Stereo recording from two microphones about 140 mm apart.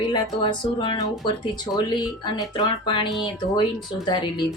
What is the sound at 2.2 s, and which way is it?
Speech, 35° left (ahead or behind).